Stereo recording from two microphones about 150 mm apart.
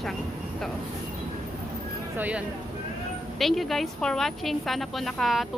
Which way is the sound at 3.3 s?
Centre (ahead or behind).